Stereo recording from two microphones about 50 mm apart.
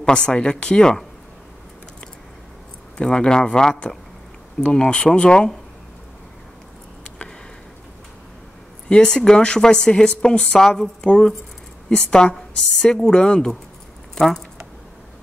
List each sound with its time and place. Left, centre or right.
0.0 s speech: centre
3.0 s speech: centre
8.8 s speech: centre